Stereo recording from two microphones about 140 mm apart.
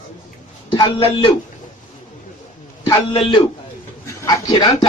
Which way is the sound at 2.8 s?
35° left (ahead or behind).